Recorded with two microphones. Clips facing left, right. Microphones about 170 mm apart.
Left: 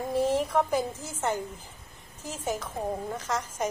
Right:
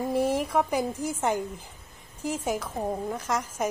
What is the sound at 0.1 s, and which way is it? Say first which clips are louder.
A woman's voice: left 1 dB; 10° right (ahead or behind).